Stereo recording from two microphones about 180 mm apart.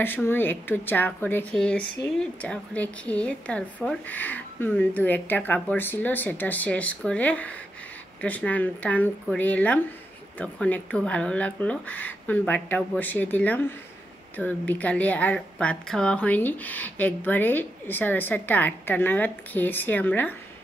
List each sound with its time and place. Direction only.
0.0 s a woman's voice: 10° left (ahead or behind)